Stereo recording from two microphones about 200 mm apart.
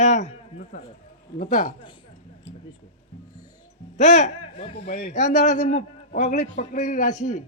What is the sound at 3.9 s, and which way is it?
Speech, 35° left (ahead or behind).